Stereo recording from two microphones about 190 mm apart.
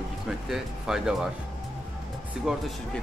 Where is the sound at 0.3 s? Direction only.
Centre (ahead or behind).